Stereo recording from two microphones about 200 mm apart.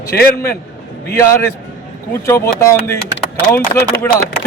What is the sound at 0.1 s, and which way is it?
Speech, 50° left (ahead or behind).